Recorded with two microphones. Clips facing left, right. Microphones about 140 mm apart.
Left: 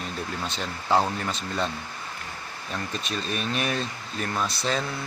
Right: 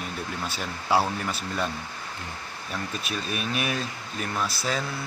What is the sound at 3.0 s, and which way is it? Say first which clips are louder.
Speech: left 2 dB; 10° right (ahead or behind).